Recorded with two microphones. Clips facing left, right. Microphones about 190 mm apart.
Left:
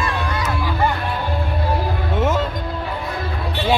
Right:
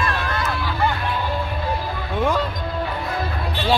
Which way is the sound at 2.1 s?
25° left (ahead or behind).